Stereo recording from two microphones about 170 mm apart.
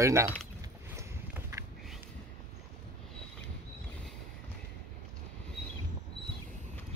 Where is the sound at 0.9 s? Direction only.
15° right (ahead or behind).